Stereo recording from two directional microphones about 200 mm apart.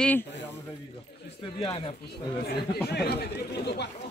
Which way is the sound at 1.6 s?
25° left (ahead or behind).